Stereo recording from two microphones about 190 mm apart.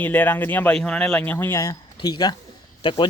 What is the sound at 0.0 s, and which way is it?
Speech, 10° left (ahead or behind).